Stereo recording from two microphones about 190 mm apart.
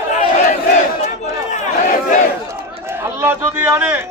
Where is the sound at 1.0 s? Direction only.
40° left (ahead or behind).